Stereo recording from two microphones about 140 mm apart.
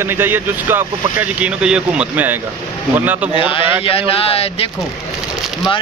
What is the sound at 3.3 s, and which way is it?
Speech, 40° left (ahead or behind).